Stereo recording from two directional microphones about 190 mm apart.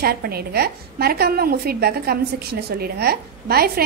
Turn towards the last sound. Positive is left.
turn(degrees=-55)  # may be behind; listen again after turning